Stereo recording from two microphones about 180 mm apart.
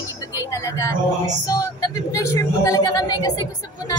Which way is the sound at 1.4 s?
20° left (ahead or behind).